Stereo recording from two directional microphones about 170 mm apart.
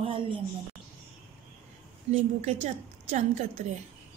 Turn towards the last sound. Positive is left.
turn(degrees=-45)  # may be behind; listen again after turning